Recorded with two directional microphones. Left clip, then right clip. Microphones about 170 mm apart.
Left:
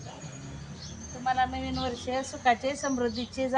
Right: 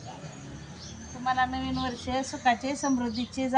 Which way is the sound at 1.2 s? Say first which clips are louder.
Even; 5° left (ahead or behind).